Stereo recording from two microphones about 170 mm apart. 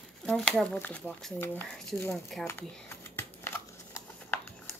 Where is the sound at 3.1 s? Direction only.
15° left (ahead or behind).